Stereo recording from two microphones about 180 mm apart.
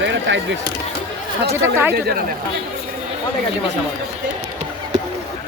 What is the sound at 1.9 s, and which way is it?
Speech, 60° right (ahead or behind).